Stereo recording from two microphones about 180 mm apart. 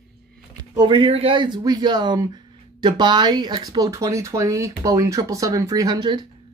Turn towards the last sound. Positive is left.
turn(degrees=-25)  # may be behind; listen again after turning